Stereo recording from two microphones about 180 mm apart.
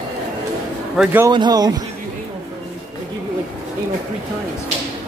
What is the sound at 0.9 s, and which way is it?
Speech, 10° right (ahead or behind).